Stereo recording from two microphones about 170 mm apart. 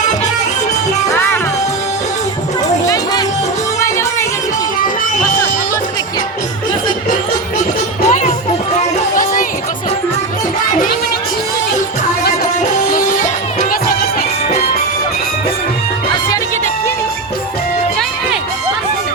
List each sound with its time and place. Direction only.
1.1 s music: 15° left (ahead or behind)
2.8 s music: 20° left (ahead or behind)
8.0 s music: 45° left (ahead or behind)